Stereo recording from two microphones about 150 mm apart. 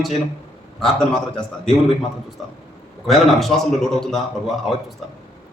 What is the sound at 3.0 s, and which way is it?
A man's voice, centre (ahead or behind).